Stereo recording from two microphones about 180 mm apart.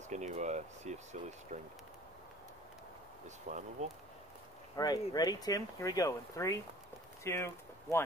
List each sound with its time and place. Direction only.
0.1 s speech: 40° right (ahead or behind)
3.3 s speech: 40° right (ahead or behind)
4.7 s speech: 20° left (ahead or behind)